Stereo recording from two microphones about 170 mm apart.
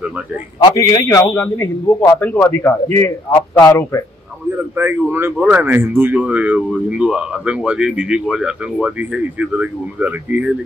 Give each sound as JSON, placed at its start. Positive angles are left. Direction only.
{"t": 0.7, "sound": "a man's voice", "side_deg": 25}
{"t": 4.7, "sound": "speech", "side_deg": -10}